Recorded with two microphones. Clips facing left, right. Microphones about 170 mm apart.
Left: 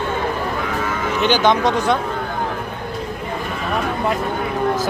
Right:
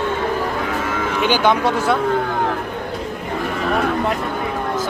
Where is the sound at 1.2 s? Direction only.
10° right (ahead or behind).